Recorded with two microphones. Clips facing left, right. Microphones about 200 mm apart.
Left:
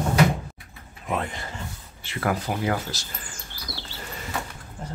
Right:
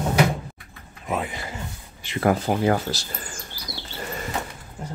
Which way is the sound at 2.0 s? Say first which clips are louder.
Right 5 dB; 20° right (ahead or behind).